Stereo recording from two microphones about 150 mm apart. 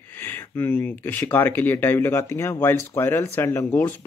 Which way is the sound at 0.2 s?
15° left (ahead or behind).